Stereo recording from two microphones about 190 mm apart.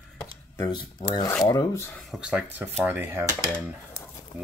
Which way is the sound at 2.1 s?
5° right (ahead or behind).